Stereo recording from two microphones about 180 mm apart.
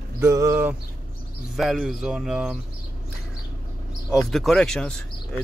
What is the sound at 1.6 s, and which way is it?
Speech, centre (ahead or behind).